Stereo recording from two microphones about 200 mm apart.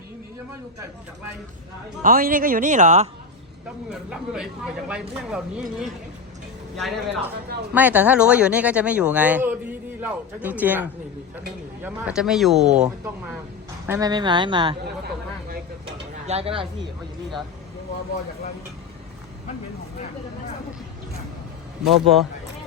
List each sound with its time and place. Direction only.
2.0 s speech: 45° right (ahead or behind)
3.8 s speech: 5° right (ahead or behind)
13.8 s speech: 15° right (ahead or behind)
15.0 s a sound: 50° right (ahead or behind)
16.2 s speech: 30° right (ahead or behind)
21.8 s speech: centre (ahead or behind)